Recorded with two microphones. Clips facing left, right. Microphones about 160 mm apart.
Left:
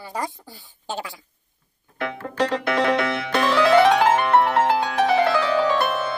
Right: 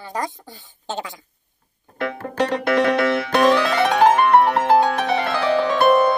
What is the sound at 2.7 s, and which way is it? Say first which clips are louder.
Music: right 4 dB; 45° right (ahead or behind).